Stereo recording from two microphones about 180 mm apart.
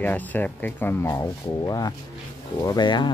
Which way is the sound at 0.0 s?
10° left (ahead or behind).